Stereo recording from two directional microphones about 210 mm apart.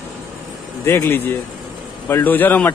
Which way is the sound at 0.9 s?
10° left (ahead or behind).